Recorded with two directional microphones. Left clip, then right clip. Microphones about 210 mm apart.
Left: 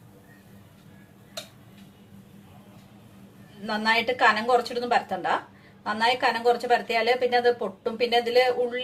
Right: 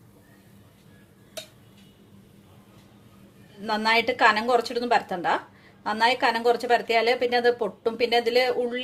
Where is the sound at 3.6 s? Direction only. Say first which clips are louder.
Right 2 dB; 50° right (ahead or behind).